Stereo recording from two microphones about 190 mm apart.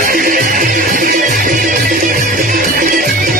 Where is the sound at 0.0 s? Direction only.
50° right (ahead or behind).